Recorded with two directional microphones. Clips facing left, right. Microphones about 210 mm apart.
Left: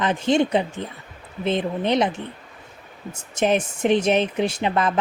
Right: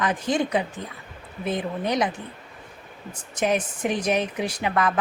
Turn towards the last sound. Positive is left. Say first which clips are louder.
# left 3 dB
turn(degrees=25)  # may be behind; listen again after turning